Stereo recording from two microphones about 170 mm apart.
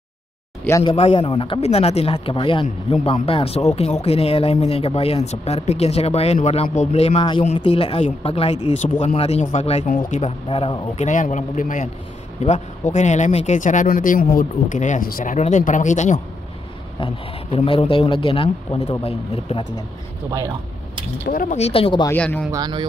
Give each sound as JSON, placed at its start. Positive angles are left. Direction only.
{"t": 0.8, "sound": "speech", "side_deg": 30}
{"t": 2.6, "sound": "speech", "side_deg": 40}
{"t": 11.1, "sound": "speech", "side_deg": 45}
{"t": 17.0, "sound": "speech", "side_deg": 35}
{"t": 21.3, "sound": "speech", "side_deg": 55}
{"t": 21.5, "sound": "speech", "side_deg": 35}
{"t": 22.0, "sound": "speech", "side_deg": 10}
{"t": 22.5, "sound": "speech", "side_deg": -25}